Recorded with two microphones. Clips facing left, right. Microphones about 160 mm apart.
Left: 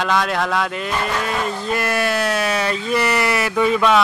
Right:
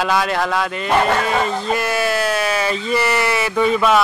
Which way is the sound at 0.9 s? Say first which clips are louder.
Right 8 dB; 65° right (ahead or behind).